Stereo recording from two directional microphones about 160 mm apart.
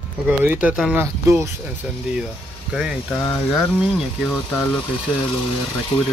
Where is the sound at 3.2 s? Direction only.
10° left (ahead or behind).